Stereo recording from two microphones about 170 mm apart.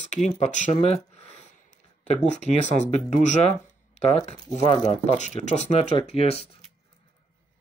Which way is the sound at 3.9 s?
40° left (ahead or behind).